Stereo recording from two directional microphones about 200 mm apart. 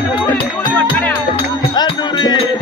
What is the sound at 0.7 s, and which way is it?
Music, 5° left (ahead or behind).